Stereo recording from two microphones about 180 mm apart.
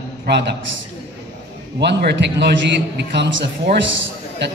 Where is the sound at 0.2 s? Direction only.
70° right (ahead or behind).